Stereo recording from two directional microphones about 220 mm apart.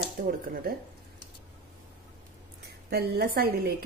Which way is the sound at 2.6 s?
45° right (ahead or behind).